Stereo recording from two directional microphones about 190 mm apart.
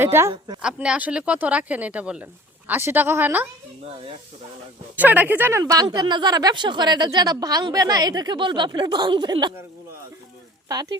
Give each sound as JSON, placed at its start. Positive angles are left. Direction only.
{"t": 0.0, "sound": "speech", "side_deg": -15}
{"t": 4.9, "sound": "speech", "side_deg": -10}